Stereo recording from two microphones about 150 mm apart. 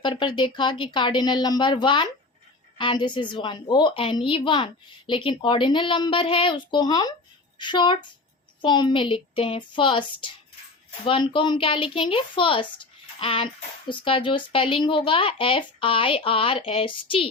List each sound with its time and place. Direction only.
0.0 s speech: 35° left (ahead or behind)